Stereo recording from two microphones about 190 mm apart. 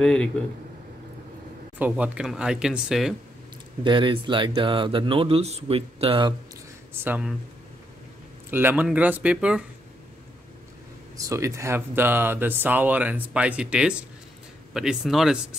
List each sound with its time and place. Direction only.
0.0 s speech: 5° left (ahead or behind)
1.8 s speech: 10° right (ahead or behind)
3.8 s speech: 25° right (ahead or behind)
6.9 s speech: 5° right (ahead or behind)
8.5 s speech: 10° right (ahead or behind)
11.1 s speech: 15° right (ahead or behind)